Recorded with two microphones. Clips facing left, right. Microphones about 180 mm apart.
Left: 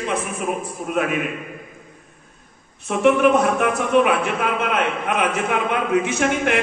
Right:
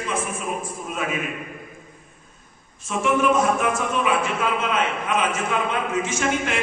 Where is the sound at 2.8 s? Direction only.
65° left (ahead or behind).